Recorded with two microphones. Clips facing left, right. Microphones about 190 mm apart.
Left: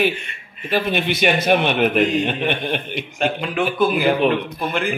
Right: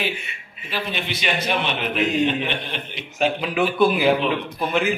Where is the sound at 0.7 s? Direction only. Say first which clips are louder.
Left 8 dB; 55° left (ahead or behind).